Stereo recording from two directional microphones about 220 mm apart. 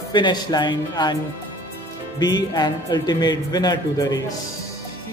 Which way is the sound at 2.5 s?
20° left (ahead or behind).